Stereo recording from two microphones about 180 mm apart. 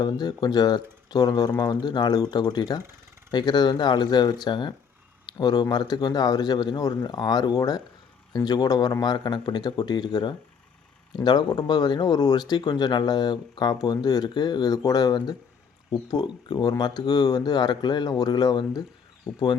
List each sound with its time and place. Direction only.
0.0 s speech: 20° left (ahead or behind)